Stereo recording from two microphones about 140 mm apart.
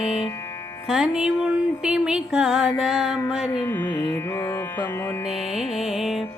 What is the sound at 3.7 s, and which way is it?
Music, 15° left (ahead or behind).